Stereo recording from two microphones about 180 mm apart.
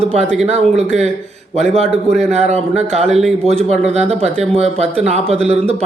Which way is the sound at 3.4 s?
35° right (ahead or behind).